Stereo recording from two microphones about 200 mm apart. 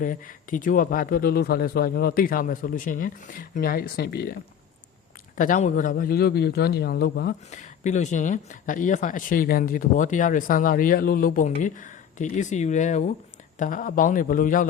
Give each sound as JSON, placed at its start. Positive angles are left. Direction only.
{"t": 0.0, "sound": "a man's voice", "side_deg": 40}
{"t": 5.4, "sound": "a man's voice", "side_deg": 40}
{"t": 7.5, "sound": "speech", "side_deg": 35}